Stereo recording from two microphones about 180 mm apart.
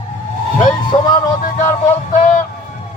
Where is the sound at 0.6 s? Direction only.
25° left (ahead or behind).